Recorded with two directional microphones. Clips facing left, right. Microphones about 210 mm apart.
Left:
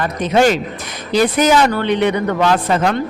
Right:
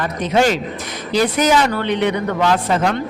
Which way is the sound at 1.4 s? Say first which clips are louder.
Left 2 dB; 50° left (ahead or behind).